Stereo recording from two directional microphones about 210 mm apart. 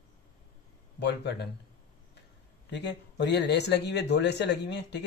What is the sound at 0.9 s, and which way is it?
Speech, 55° left (ahead or behind).